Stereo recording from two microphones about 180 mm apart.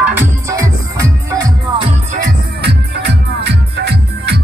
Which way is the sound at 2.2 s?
65° right (ahead or behind).